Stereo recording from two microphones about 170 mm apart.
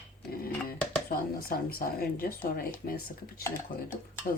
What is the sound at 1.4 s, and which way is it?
Speech, 60° left (ahead or behind).